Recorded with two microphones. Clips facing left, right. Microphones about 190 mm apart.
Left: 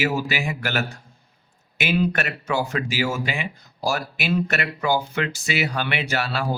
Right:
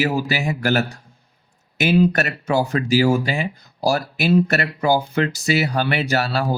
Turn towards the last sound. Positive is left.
turn(degrees=-40)  # may be behind; listen again after turning